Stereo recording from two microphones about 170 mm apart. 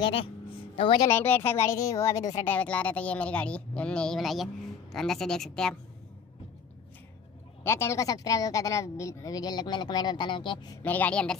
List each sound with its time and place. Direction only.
0.0 s speech: 30° left (ahead or behind)
1.0 s speech: 10° left (ahead or behind)
2.5 s a woman's voice: 10° left (ahead or behind)
7.6 s speech: 15° left (ahead or behind)
10.8 s speech: 10° left (ahead or behind)